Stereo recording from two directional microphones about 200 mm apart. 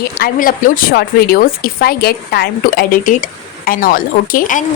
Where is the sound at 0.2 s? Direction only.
45° left (ahead or behind).